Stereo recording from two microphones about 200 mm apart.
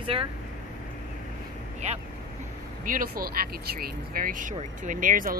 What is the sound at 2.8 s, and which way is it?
Speech, 45° right (ahead or behind).